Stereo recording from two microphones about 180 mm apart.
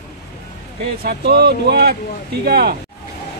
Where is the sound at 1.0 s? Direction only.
65° right (ahead or behind).